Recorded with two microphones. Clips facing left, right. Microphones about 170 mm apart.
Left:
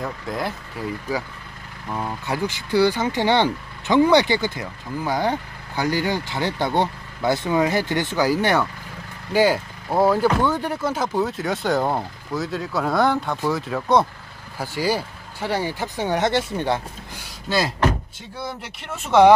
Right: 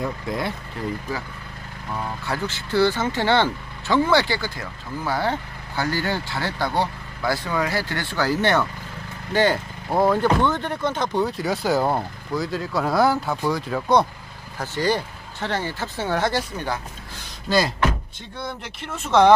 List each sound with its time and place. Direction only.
0.3 s speech: centre (ahead or behind)
2.0 s speech: 15° left (ahead or behind)
17.5 s speech: 5° left (ahead or behind)